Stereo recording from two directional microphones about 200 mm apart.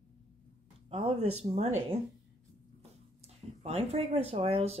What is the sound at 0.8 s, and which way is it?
Speech, 30° right (ahead or behind).